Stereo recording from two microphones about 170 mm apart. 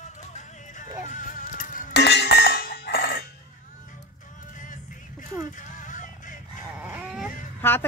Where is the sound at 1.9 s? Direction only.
80° left; by 3.3 s 65° left (ahead or behind).